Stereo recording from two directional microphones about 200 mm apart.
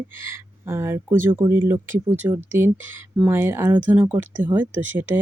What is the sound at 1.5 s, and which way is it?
Speech, 10° right (ahead or behind).